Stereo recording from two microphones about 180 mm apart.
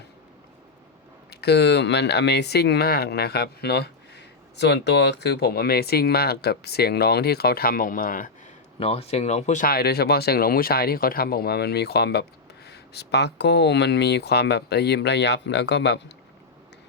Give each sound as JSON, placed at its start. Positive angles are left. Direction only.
{"t": 1.3, "sound": "speech", "side_deg": 65}
{"t": 8.8, "sound": "speech", "side_deg": 35}